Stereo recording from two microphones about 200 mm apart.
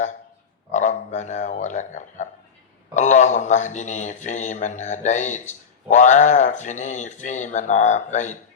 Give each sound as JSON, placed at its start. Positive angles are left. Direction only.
{"t": 0.7, "sound": "speech", "side_deg": 35}